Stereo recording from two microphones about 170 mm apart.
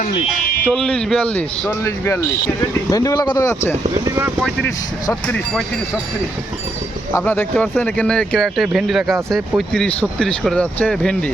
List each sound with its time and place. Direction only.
0.6 s speech: 5° left (ahead or behind)
4.0 s speech: 15° right (ahead or behind)
7.3 s speech: 10° left (ahead or behind)